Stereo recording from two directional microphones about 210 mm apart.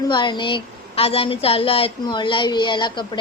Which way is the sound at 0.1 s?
20° left (ahead or behind).